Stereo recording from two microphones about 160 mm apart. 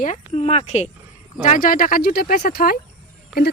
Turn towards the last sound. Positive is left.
turn(degrees=0)  # may be behind; listen again after turning